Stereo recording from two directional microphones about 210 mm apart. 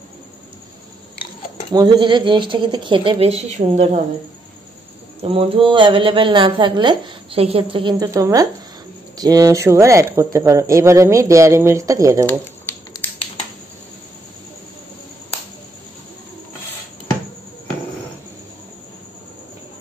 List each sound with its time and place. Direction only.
1.7 s a woman's voice: 20° right (ahead or behind)
5.2 s a woman's voice: 25° right (ahead or behind)
12.3 s a sound: 15° left (ahead or behind)